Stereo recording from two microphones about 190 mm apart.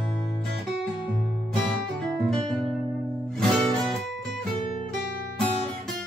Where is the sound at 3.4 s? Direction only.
Centre (ahead or behind).